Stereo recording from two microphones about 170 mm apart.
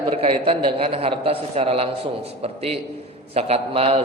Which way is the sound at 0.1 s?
35° right (ahead or behind).